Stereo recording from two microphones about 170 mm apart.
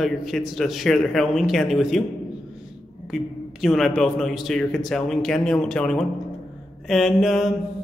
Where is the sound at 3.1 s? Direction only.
Centre (ahead or behind).